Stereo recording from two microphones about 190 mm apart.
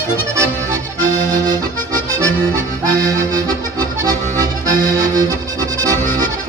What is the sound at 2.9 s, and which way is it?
Accordion, 20° right (ahead or behind).